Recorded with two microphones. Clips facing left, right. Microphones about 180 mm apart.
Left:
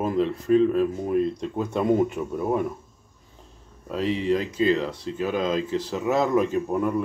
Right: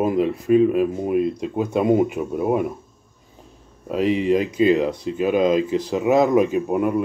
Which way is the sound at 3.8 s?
15° right (ahead or behind).